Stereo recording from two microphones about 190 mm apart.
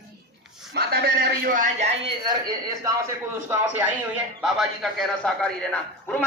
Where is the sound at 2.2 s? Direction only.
20° right (ahead or behind).